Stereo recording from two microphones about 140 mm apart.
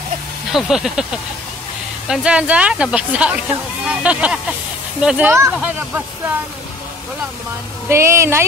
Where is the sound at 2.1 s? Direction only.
10° right (ahead or behind).